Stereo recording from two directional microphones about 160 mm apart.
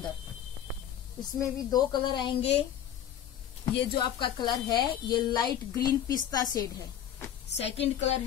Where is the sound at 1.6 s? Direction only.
25° left (ahead or behind).